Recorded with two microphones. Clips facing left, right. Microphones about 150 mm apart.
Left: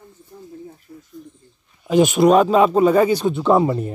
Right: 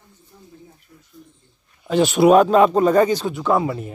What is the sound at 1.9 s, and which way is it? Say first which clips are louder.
Speech: left 3 dB; 10° left (ahead or behind).